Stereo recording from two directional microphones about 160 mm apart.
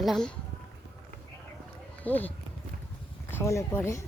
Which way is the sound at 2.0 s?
10° left (ahead or behind).